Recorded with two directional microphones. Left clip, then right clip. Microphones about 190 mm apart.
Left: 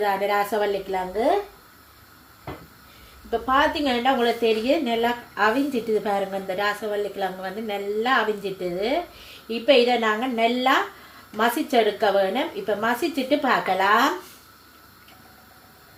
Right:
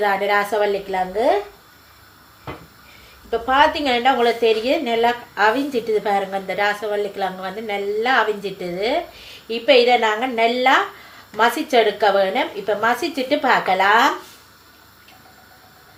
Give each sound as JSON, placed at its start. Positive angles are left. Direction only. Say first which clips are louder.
{"t": 0.0, "sound": "a woman's voice", "louder": "right 4 dB", "side_deg": 25}
{"t": 3.2, "sound": "a woman's voice", "louder": "right 5 dB", "side_deg": 20}